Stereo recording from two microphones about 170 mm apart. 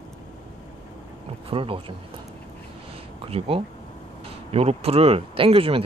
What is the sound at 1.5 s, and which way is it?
Speech, 30° right (ahead or behind).